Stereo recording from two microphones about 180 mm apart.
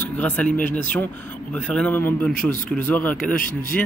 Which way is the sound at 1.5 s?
5° left (ahead or behind).